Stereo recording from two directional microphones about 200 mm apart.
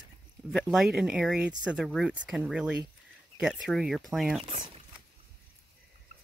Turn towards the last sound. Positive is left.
turn(degrees=-30)  # may be behind; listen again after turning